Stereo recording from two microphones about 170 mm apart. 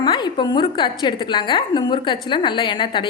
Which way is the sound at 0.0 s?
25° left (ahead or behind).